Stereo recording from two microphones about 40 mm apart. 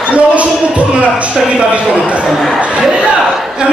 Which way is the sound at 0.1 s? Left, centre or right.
Right.